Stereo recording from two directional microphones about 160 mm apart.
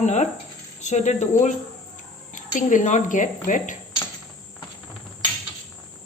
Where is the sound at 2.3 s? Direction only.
55° left (ahead or behind).